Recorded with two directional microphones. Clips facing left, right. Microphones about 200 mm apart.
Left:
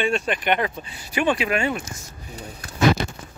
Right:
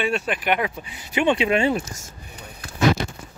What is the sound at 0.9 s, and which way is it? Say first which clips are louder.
Speech: right 3 dB; 20° right (ahead or behind).